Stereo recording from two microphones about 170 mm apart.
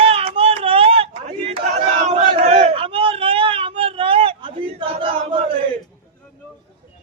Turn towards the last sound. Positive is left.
turn(degrees=-30)  # may be behind; listen again after turning